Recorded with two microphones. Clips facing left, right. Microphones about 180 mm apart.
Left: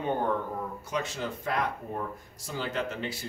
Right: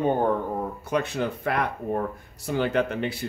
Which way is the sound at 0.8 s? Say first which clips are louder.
Right 8 dB; 60° right (ahead or behind).